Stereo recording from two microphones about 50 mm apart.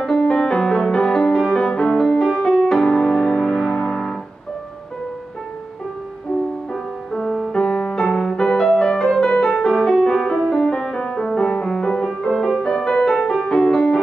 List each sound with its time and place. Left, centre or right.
0.3 s music: centre
2.5 s music: centre
6.7 s music: centre